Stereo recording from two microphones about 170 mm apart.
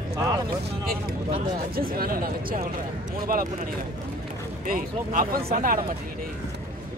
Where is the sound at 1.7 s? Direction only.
60° right (ahead or behind).